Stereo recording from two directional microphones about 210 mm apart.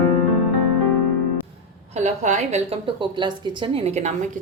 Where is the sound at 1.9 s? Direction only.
35° right (ahead or behind).